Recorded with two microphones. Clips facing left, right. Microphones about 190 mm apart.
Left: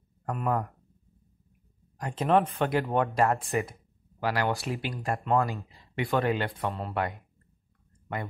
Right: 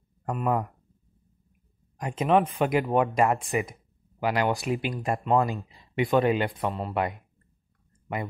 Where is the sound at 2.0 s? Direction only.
15° right (ahead or behind).